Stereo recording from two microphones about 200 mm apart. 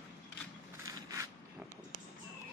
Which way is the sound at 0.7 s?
15° right (ahead or behind).